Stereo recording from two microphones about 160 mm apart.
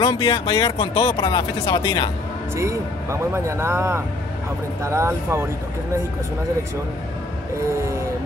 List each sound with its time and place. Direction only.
0.0 s speech: 25° left (ahead or behind)
2.5 s speech: 15° right (ahead or behind)